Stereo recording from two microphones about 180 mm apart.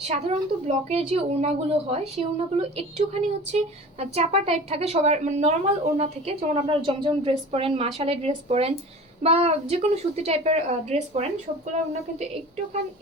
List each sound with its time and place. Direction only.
0.0 s a woman's voice: 40° right (ahead or behind)